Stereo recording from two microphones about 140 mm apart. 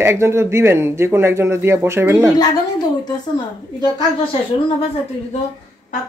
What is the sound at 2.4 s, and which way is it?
Speech, 30° left (ahead or behind).